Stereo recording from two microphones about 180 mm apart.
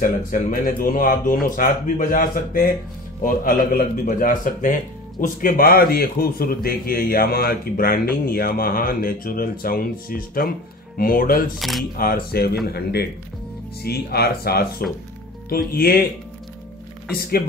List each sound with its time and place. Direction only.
0.0 s a man's voice: 50° left (ahead or behind)